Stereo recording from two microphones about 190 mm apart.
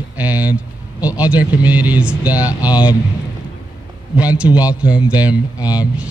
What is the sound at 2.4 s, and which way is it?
Speech, 20° left (ahead or behind).